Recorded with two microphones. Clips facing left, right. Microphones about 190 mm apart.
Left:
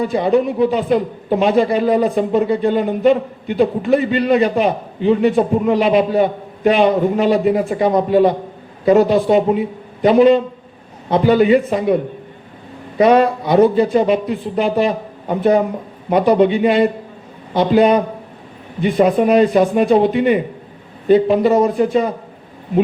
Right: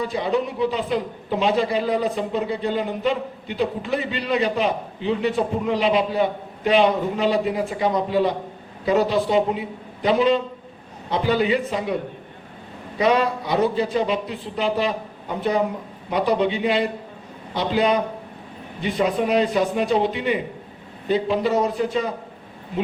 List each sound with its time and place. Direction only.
0.0 s speech: 50° left (ahead or behind)
13.0 s speech: 50° left (ahead or behind)